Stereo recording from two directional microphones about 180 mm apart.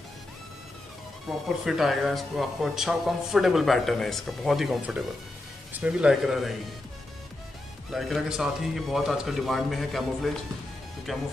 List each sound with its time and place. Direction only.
1.6 s speech: centre (ahead or behind)
7.9 s speech: centre (ahead or behind)